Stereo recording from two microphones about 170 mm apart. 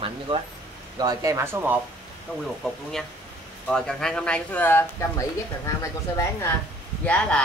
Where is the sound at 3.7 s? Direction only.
5° left (ahead or behind).